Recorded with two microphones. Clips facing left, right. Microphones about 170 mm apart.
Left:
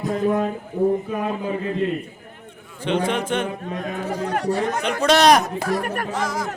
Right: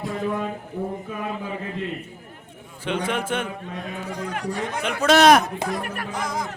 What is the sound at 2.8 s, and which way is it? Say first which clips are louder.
Speech: left 4 dB; 5° right (ahead or behind).